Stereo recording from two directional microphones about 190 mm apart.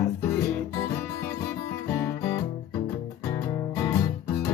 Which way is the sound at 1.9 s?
15° left (ahead or behind).